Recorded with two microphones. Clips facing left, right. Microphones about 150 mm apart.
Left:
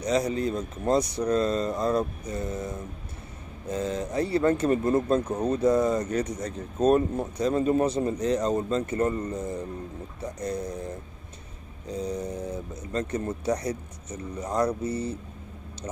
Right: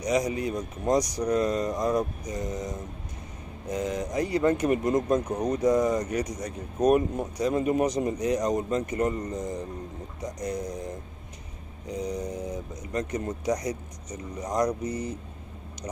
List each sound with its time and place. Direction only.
0.0 s speech: 10° right (ahead or behind)
11.9 s speech: 15° right (ahead or behind)